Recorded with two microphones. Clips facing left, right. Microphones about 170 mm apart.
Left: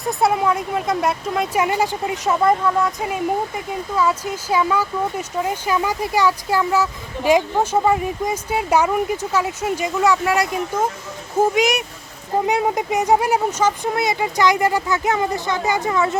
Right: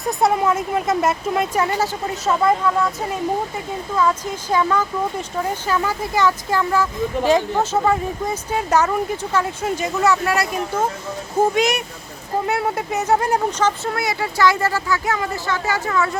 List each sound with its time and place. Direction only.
0.0 s speech: centre (ahead or behind)
1.5 s speech: 15° left (ahead or behind)
3.9 s speech: 10° left (ahead or behind)